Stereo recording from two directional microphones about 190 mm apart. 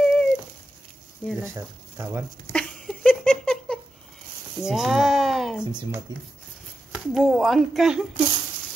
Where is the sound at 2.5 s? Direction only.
5° left (ahead or behind).